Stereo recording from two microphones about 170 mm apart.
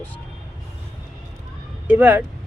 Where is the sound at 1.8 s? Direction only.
10° right (ahead or behind).